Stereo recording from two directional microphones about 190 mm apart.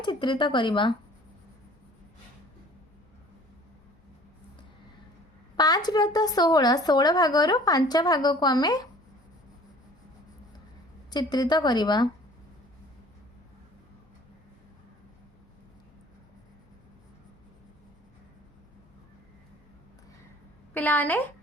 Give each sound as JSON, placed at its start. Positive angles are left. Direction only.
{"t": 0.0, "sound": "a woman's voice", "side_deg": 25}
{"t": 5.5, "sound": "a woman's voice", "side_deg": 20}
{"t": 11.1, "sound": "a woman's voice", "side_deg": 20}
{"t": 20.7, "sound": "a woman's voice", "side_deg": 10}